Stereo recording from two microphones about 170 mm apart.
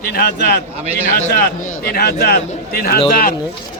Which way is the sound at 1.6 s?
55° left (ahead or behind).